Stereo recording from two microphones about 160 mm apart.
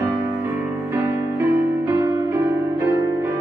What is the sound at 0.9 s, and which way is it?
Music, 15° right (ahead or behind).